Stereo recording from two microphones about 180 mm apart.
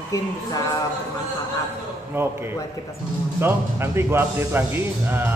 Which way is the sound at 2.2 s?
15° right (ahead or behind).